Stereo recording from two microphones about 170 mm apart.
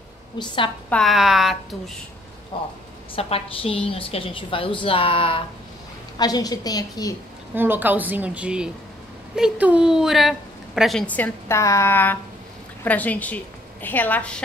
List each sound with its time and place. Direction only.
0.4 s a woman's voice: 25° left (ahead or behind)
0.8 s a woman's voice: 5° left (ahead or behind)
2.5 s a woman's voice: 30° left (ahead or behind)
7.5 s a woman's voice: 10° right (ahead or behind); by 14.4 s 10° left (ahead or behind)